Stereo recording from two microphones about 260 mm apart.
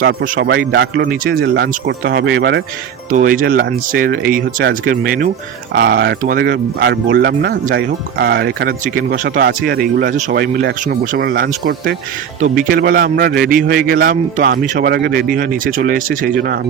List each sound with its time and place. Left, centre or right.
0.0 s speech: right